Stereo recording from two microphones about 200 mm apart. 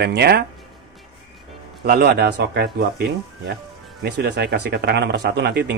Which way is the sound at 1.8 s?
50° right (ahead or behind).